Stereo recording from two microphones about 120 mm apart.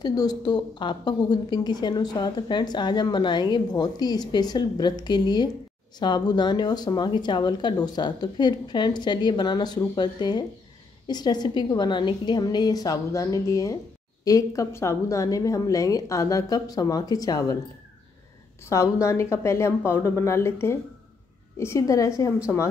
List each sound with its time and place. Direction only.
0.0 s a woman's voice: 35° left (ahead or behind)
18.6 s a woman's voice: 25° left (ahead or behind)